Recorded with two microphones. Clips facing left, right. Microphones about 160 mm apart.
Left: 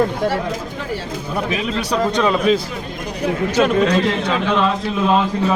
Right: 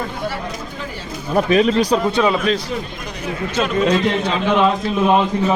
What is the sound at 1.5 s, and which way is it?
Speech, 40° right (ahead or behind).